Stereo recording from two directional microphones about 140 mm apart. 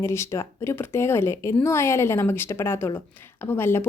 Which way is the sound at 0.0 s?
20° left (ahead or behind).